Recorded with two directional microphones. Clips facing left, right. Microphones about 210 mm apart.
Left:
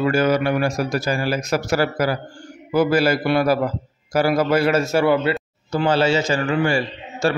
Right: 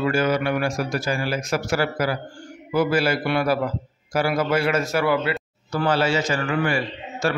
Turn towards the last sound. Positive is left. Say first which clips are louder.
# left 3 dB
turn(degrees=30)  # may be behind; listen again after turning